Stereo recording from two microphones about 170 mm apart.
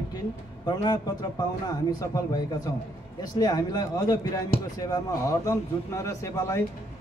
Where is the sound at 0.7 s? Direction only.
25° left (ahead or behind).